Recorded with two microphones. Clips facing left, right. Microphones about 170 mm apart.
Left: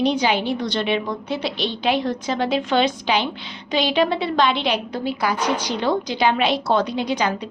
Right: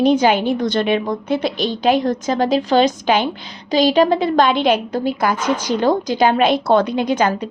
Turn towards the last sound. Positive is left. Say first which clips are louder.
# right 5 dB
turn(degrees=-50)  # may be behind; listen again after turning